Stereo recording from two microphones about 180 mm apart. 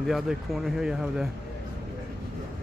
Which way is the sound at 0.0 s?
Centre (ahead or behind).